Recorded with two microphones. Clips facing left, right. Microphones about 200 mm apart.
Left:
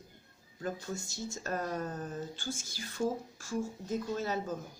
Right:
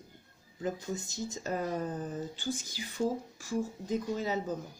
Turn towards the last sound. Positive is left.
turn(degrees=-15)  # may be behind; listen again after turning